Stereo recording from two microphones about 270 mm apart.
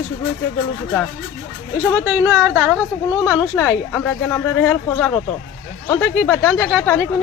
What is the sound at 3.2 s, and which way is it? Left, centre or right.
Speech, centre.